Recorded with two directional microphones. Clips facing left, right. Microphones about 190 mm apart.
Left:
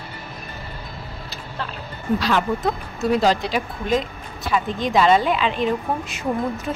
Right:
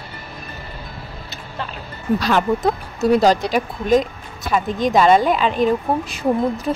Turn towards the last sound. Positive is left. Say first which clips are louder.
# right 5 dB
turn(degrees=-35)  # may be behind; listen again after turning